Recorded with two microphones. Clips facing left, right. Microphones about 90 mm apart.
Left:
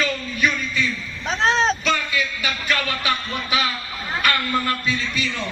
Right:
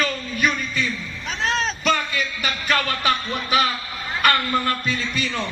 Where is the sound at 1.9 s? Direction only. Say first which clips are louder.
Right 1 dB; 45° right (ahead or behind).